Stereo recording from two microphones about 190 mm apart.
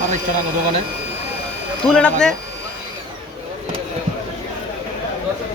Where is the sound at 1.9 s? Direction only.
5° left (ahead or behind).